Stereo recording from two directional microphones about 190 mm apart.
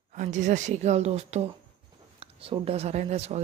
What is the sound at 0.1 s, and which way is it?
A woman's voice, 40° right (ahead or behind).